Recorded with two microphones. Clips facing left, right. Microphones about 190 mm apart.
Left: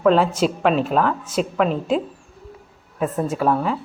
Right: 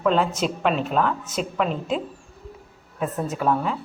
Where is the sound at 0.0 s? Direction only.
Centre (ahead or behind).